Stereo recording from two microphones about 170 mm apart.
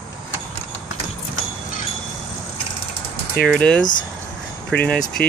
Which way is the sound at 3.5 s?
5° left (ahead or behind).